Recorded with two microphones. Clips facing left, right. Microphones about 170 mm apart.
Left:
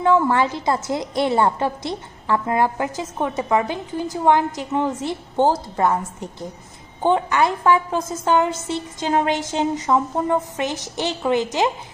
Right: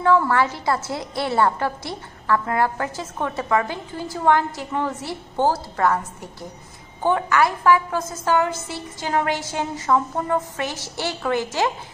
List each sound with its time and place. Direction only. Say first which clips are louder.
0.0 s a woman's voice: left 1 dB; 20° left (ahead or behind)